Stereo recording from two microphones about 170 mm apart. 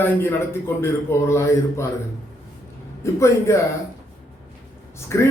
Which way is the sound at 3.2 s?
15° left (ahead or behind).